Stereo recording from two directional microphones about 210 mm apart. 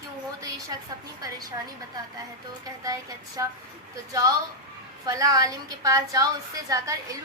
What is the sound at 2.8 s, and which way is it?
Speech, 15° right (ahead or behind).